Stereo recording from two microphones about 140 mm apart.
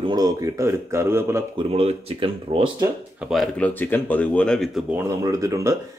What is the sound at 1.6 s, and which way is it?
Speech, 45° right (ahead or behind).